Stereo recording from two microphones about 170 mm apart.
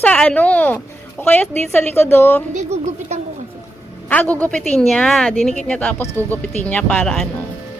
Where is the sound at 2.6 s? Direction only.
40° right (ahead or behind).